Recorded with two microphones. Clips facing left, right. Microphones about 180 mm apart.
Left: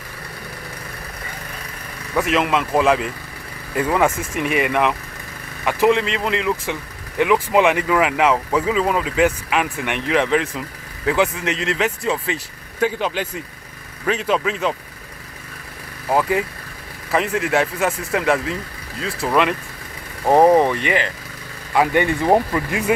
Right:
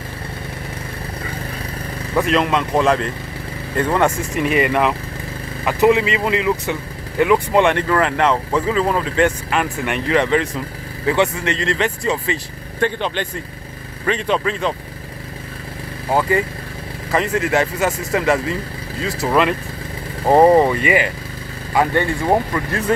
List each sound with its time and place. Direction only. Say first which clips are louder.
2.1 s speech: right 2 dB; 5° left (ahead or behind)
16.1 s speech: right 1 dB; centre (ahead or behind)
21.9 s speech: left 1 dB; 20° left (ahead or behind)